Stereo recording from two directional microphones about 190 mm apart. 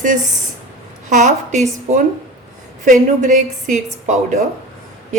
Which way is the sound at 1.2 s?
40° right (ahead or behind).